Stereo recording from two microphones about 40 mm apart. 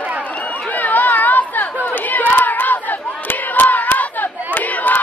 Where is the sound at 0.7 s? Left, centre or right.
Left.